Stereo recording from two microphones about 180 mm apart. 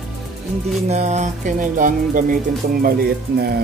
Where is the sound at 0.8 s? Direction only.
40° right (ahead or behind).